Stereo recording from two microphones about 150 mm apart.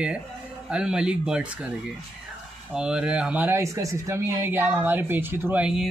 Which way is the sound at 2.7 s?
5° right (ahead or behind).